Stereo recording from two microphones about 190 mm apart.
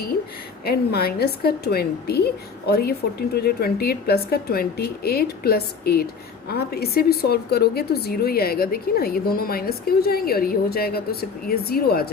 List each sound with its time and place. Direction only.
0.6 s a woman's voice: 55° left (ahead or behind)